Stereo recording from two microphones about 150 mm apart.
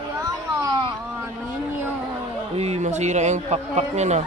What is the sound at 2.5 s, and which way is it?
A man's voice, 45° right (ahead or behind).